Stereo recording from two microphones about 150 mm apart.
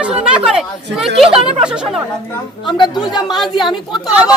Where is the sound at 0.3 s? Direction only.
5° right (ahead or behind).